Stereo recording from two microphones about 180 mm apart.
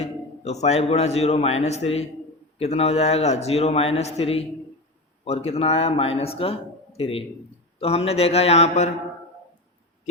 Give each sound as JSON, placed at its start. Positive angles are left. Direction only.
{"t": 0.0, "sound": "a man's voice", "side_deg": 40}